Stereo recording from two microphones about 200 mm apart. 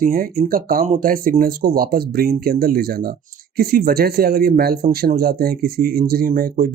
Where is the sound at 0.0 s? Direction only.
45° right (ahead or behind).